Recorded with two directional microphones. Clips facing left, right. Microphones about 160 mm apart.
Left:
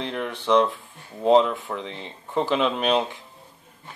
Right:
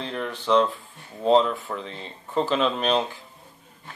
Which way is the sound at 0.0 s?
15° left (ahead or behind).